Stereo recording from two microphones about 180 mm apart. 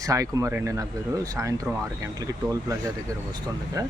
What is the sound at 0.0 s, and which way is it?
Speech, 20° right (ahead or behind).